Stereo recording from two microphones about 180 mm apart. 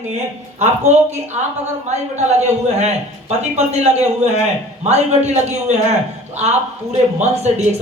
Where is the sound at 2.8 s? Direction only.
35° right (ahead or behind).